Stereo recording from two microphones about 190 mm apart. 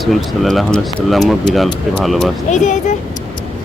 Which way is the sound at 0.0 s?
Centre (ahead or behind).